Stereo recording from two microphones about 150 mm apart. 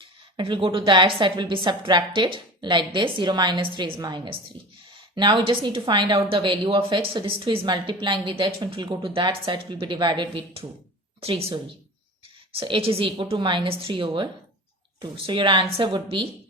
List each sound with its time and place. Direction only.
0.3 s a woman's voice: 35° right (ahead or behind)
12.5 s a woman's voice: 35° right (ahead or behind)